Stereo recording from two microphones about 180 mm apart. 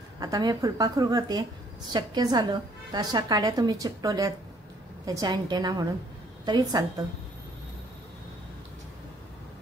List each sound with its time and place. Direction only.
0.2 s a woman's voice: 20° right (ahead or behind)